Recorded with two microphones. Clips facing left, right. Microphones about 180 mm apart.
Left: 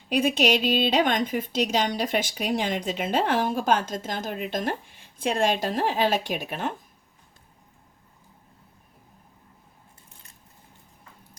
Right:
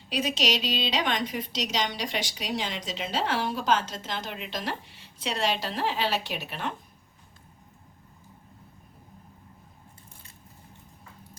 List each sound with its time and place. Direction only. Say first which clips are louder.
0.1 s a woman's voice: left 6 dB; 55° left (ahead or behind)